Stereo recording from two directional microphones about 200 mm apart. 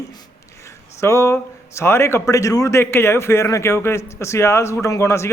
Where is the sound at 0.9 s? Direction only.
15° left (ahead or behind).